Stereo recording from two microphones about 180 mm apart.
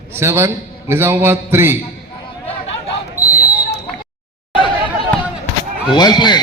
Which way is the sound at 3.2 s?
10° right (ahead or behind).